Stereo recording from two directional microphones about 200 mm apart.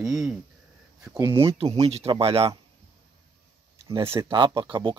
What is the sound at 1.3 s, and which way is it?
Speech, 30° right (ahead or behind).